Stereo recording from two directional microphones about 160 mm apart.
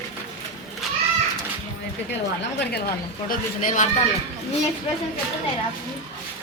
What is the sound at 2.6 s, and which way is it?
Speech, 80° left.